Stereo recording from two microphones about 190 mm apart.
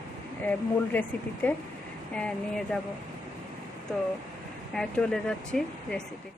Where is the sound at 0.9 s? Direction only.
10° left (ahead or behind).